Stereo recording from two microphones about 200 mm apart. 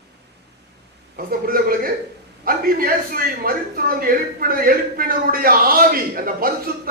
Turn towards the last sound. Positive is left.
turn(degrees=-45)  # may be behind; listen again after turning